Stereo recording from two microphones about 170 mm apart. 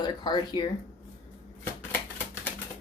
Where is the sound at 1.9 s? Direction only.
10° left (ahead or behind).